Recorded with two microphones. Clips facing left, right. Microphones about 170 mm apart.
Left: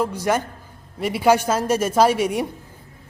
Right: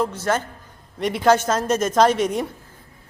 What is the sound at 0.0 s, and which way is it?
A woman's voice, 10° left (ahead or behind).